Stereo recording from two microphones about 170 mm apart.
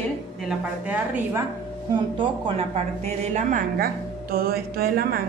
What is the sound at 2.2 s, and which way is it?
A woman's voice, 30° right (ahead or behind).